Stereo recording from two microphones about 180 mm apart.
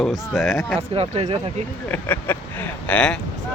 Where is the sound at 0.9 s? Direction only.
35° right (ahead or behind).